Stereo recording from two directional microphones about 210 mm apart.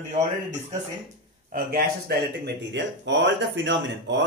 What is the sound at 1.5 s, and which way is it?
Speech, 45° right (ahead or behind).